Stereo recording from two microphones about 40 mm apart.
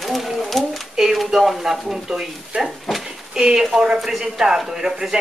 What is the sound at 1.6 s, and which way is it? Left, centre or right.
Speech, centre.